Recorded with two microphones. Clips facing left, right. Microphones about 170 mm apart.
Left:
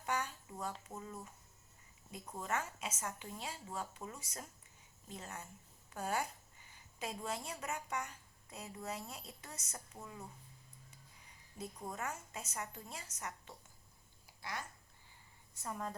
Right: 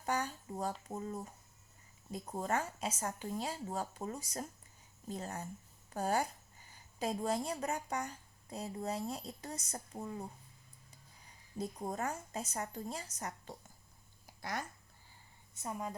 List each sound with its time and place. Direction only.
0.0 s a sound: 35° right (ahead or behind)
2.0 s a woman's voice: 40° right (ahead or behind)
11.3 s speech: 35° right (ahead or behind)
15.5 s a woman's voice: 20° right (ahead or behind)